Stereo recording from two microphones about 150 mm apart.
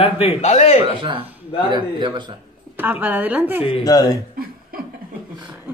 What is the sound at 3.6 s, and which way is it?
Speech, 35° left (ahead or behind).